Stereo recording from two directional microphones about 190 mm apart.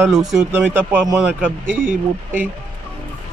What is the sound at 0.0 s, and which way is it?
Speech, 20° right (ahead or behind).